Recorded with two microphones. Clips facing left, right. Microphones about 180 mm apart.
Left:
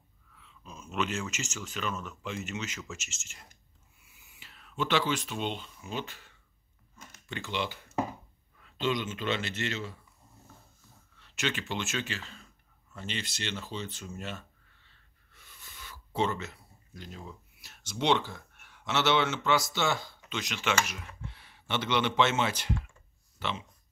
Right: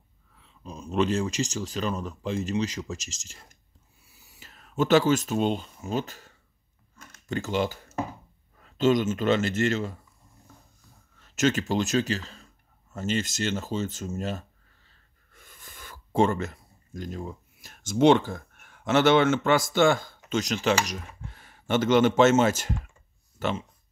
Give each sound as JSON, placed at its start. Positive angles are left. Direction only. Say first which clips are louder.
{"t": 0.4, "sound": "speech", "louder": "right 8 dB", "side_deg": -35}
{"t": 4.0, "sound": "a sound", "louder": "right 4 dB", "side_deg": -35}
{"t": 7.2, "sound": "speech", "louder": "right 8 dB", "side_deg": -40}
{"t": 11.1, "sound": "speech", "louder": "right 10 dB", "side_deg": -45}